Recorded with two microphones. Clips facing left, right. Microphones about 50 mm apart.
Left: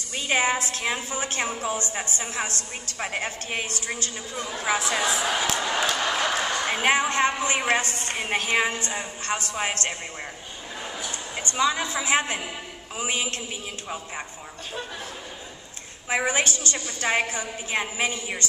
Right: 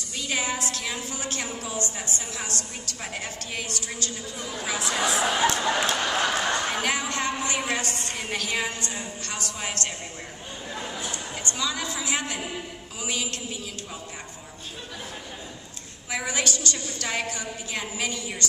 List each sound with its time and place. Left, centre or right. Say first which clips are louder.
0.2 s a woman's voice: left 5 dB; left
5.1 s speech: right 2 dB; right
6.1 s a woman's voice: even; left
11.5 s a woman's voice: left 7 dB; left
16.1 s a woman's voice: left 4 dB; left